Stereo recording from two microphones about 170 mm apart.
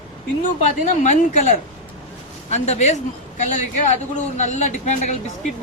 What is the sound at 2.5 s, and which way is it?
Speech, 45° left (ahead or behind).